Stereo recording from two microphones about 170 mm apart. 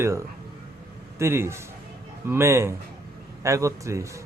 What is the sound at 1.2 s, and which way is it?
A man's voice, 15° right (ahead or behind).